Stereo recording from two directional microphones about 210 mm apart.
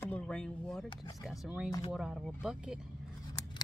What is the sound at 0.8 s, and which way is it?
Speech, 20° left (ahead or behind).